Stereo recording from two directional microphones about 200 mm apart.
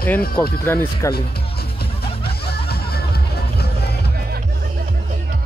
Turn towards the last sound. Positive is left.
turn(degrees=50)  # may be behind; listen again after turning